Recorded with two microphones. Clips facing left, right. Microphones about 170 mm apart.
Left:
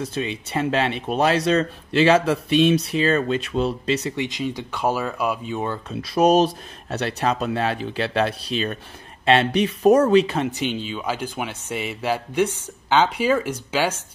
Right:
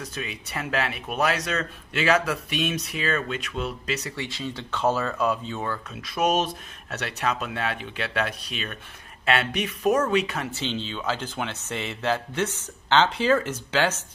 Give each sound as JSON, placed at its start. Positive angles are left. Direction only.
{"t": 0.0, "sound": "speech", "side_deg": 30}
{"t": 5.7, "sound": "speech", "side_deg": 30}
{"t": 10.5, "sound": "speech", "side_deg": 15}